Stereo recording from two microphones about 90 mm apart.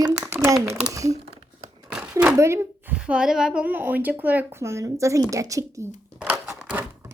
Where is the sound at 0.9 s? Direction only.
40° right (ahead or behind).